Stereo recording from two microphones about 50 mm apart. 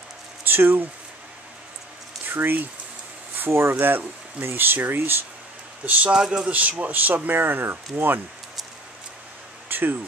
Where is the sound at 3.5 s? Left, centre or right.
Right.